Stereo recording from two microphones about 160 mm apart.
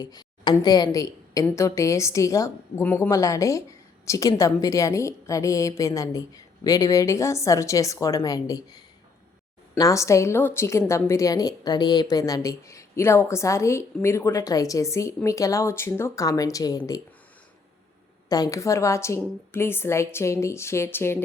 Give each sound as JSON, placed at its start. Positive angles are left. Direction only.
{"t": 0.0, "sound": "a woman's voice", "side_deg": 25}
{"t": 18.3, "sound": "a woman's voice", "side_deg": 20}